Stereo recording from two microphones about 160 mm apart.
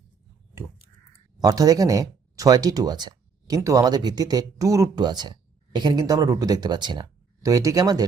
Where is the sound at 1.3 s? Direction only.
25° right (ahead or behind).